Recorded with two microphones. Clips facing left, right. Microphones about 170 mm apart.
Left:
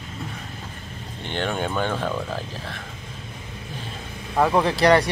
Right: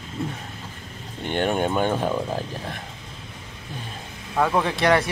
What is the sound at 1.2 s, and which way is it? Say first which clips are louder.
Speech: right 4 dB; 10° right (ahead or behind).